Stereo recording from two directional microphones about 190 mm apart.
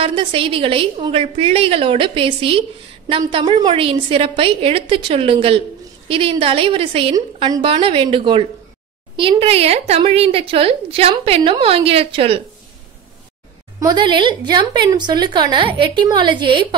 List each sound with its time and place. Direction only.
0.0 s a woman's voice: 30° right (ahead or behind)
13.7 s speech: 20° right (ahead or behind)